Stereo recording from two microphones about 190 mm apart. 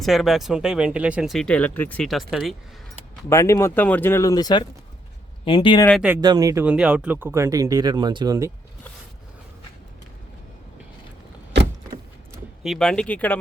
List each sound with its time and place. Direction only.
0.0 s speech: centre (ahead or behind)
3.2 s speech: 15° left (ahead or behind)
6.2 s speech: 20° right (ahead or behind)
12.6 s speech: centre (ahead or behind)